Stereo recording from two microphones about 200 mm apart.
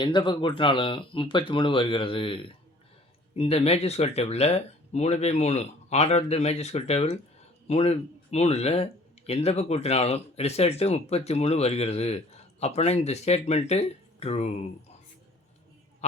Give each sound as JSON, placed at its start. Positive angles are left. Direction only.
{"t": 0.0, "sound": "speech", "side_deg": 25}